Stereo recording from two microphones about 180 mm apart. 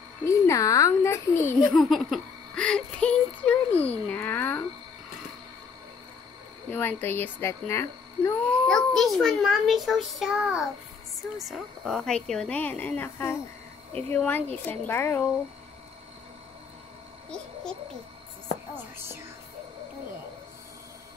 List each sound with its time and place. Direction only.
0.2 s speech: 15° left (ahead or behind)
1.7 s a sound: centre (ahead or behind)
6.7 s speech: 10° left (ahead or behind)
8.6 s a child's voice: centre (ahead or behind)